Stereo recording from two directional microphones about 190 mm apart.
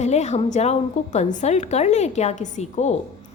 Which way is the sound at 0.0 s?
35° left (ahead or behind).